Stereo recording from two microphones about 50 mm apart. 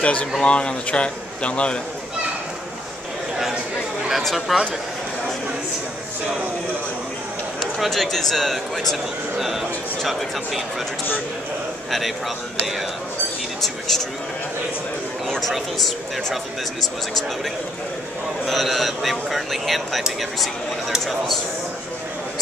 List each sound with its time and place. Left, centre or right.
0.0 s speech: left
4.1 s a man's voice: centre
7.8 s a man's voice: centre
13.6 s a man's voice: centre
15.2 s a man's voice: centre
18.5 s a man's voice: centre